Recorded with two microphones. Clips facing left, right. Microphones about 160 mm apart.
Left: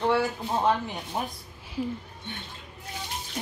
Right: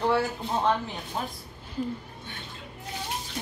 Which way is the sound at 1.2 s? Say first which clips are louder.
Left 1 dB; 15° left (ahead or behind).